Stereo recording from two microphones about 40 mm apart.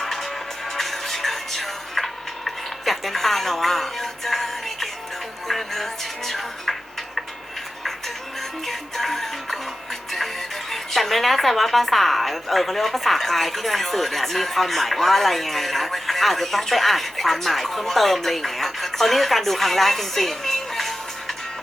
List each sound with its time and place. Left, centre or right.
0.0 s music: centre
8.6 s music: centre
10.7 s a woman's voice: centre